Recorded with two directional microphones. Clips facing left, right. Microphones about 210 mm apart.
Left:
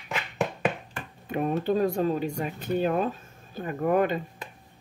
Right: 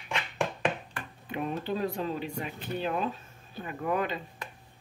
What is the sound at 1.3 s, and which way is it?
Speech, 45° left (ahead or behind).